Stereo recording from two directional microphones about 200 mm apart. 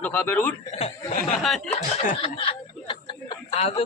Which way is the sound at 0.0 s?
10° left (ahead or behind).